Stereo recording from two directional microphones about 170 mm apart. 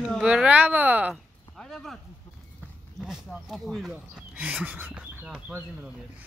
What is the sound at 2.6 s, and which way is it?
Speech, 5° right (ahead or behind).